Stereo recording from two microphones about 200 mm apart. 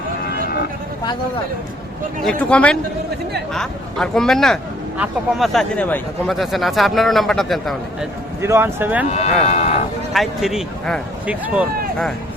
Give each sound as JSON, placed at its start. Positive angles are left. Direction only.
{"t": 2.2, "sound": "speech", "side_deg": 5}
{"t": 8.4, "sound": "speech", "side_deg": -15}
{"t": 9.0, "sound": "speech", "side_deg": 35}
{"t": 10.1, "sound": "speech", "side_deg": 0}